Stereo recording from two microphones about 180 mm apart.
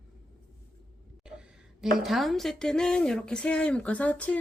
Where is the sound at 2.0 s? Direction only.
Centre (ahead or behind).